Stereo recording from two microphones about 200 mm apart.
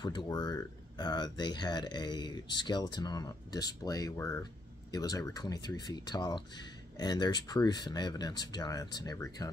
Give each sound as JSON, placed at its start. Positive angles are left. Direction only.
{"t": 0.0, "sound": "speech", "side_deg": 20}